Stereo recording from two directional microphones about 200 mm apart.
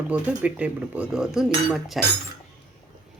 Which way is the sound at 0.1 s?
5° right (ahead or behind).